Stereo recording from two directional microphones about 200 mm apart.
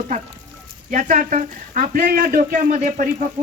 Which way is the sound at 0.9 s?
40° right (ahead or behind).